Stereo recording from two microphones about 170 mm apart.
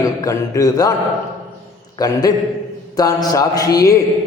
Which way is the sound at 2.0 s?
20° left (ahead or behind).